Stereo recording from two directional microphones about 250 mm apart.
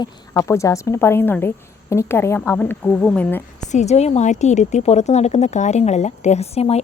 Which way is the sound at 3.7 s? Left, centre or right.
Left.